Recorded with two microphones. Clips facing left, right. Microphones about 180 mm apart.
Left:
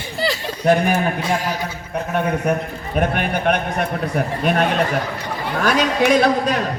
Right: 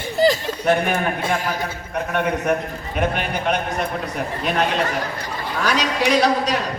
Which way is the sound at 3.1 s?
55° left (ahead or behind).